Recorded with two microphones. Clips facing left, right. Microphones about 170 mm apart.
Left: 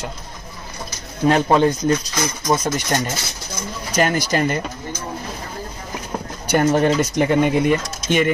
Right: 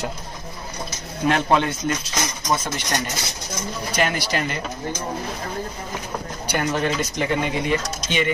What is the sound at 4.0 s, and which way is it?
Speech, 45° left (ahead or behind).